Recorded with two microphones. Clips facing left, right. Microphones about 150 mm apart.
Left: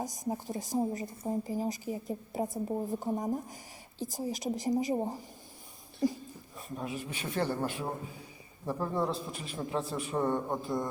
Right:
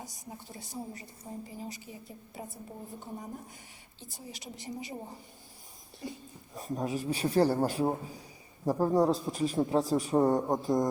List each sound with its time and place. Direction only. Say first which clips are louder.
0.0 s a woman's voice: left 10 dB; 40° left (ahead or behind)
6.6 s a man's voice: right 5 dB; 40° right (ahead or behind)